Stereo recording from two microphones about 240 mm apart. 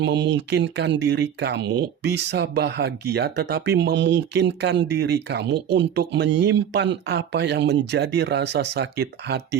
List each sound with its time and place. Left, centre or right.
0.0 s speech: right